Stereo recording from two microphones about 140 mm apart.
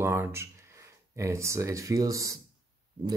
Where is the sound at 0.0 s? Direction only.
15° right (ahead or behind).